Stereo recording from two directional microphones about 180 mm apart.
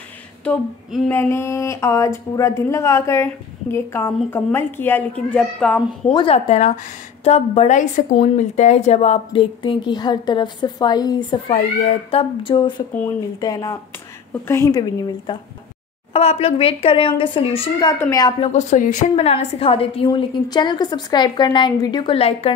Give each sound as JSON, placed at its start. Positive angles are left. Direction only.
{"t": 0.5, "sound": "a sound", "side_deg": 5}
{"t": 6.0, "sound": "a woman's voice", "side_deg": 30}
{"t": 16.1, "sound": "speech", "side_deg": 35}
{"t": 18.4, "sound": "a woman's voice", "side_deg": 40}